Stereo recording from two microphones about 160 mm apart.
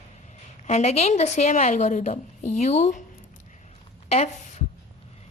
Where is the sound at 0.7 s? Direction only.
40° left (ahead or behind).